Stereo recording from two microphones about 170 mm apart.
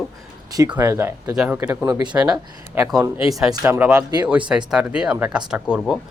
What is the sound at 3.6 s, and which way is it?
Speech, 15° right (ahead or behind).